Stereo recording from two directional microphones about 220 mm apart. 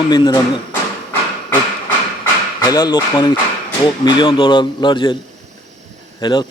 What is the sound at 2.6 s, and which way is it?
Speech, 15° left (ahead or behind).